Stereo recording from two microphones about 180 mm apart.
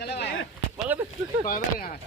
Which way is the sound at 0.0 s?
70° left (ahead or behind).